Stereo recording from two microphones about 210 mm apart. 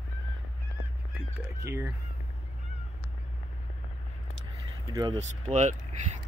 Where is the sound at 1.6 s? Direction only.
15° right (ahead or behind).